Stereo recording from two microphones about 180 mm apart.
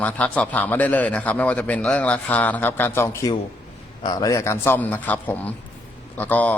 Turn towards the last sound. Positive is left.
turn(degrees=10)  # may be behind; listen again after turning